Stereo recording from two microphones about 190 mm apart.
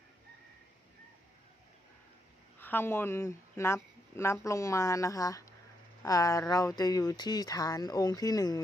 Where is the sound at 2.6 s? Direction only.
10° left (ahead or behind).